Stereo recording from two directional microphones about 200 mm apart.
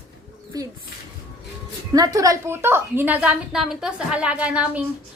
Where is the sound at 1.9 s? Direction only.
20° right (ahead or behind).